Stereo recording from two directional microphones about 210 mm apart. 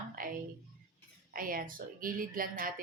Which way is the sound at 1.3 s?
40° right (ahead or behind).